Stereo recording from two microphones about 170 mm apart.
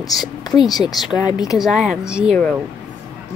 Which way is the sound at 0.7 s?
Centre (ahead or behind).